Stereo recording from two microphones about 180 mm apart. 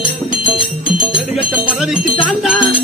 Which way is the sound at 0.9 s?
5° right (ahead or behind).